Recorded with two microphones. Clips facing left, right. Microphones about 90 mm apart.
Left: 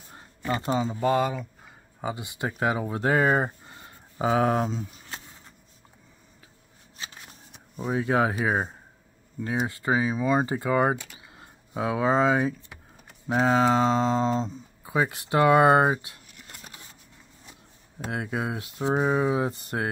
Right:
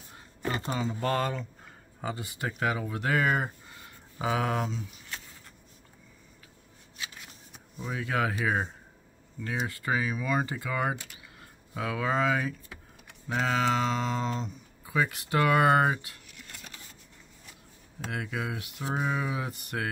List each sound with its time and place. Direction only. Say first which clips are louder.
0.7 s speech: left 8 dB; 20° left (ahead or behind)
1.0 s speech: left 5 dB; 10° left (ahead or behind); by 5.2 s 35° left (ahead or behind)
7.7 s a sound: left 8 dB; 40° left (ahead or behind)
8.0 s speech: left 5 dB; 25° left (ahead or behind)
9.4 s speech: left 5 dB; 25° left (ahead or behind)
18.1 s speech: left 4 dB; 25° left (ahead or behind)